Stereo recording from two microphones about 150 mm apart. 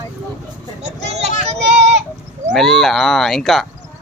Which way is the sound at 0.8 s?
45° right (ahead or behind).